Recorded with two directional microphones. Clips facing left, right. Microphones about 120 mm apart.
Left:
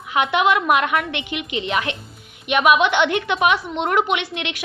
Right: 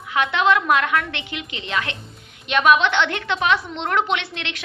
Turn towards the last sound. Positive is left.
turn(degrees=15)  # may be behind; listen again after turning